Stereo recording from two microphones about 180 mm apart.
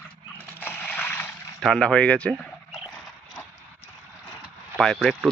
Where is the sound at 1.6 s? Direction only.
5° left (ahead or behind).